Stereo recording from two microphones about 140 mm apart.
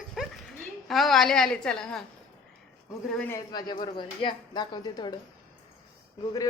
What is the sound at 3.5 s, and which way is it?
A woman's voice, 30° left (ahead or behind).